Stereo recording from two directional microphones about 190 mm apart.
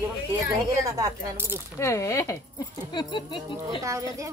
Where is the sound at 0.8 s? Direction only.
15° right (ahead or behind).